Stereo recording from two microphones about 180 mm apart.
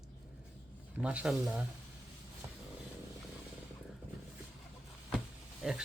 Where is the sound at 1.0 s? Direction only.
5° right (ahead or behind).